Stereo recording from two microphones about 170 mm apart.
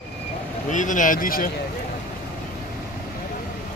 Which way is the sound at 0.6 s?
50° left (ahead or behind).